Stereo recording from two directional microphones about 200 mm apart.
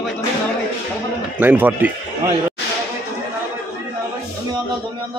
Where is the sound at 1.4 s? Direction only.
10° right (ahead or behind).